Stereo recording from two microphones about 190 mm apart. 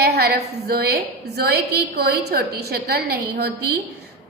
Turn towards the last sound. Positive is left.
turn(degrees=-55)  # may be behind; listen again after turning